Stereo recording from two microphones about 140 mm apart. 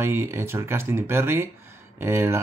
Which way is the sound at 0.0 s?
20° right (ahead or behind).